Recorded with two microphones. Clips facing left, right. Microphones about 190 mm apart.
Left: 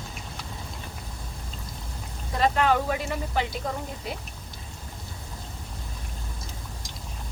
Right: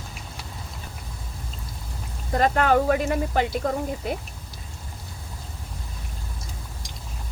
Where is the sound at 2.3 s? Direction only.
50° right (ahead or behind).